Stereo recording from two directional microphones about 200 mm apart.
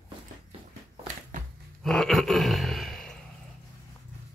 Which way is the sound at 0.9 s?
40° right (ahead or behind).